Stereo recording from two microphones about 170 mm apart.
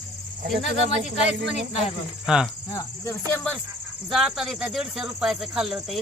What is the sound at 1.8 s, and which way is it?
Speech, 5° right (ahead or behind).